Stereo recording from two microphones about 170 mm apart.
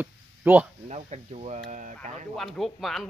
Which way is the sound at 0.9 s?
40° right (ahead or behind).